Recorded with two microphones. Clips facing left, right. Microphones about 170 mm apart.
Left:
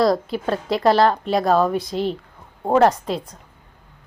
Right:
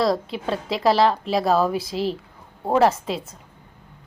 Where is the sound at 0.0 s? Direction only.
Centre (ahead or behind).